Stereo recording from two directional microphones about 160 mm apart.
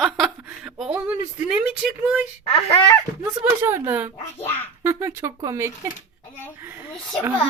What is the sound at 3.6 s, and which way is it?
A woman's voice, 15° right (ahead or behind).